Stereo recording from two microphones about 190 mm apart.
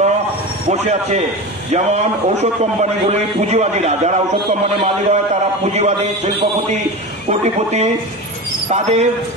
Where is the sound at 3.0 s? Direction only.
35° right (ahead or behind).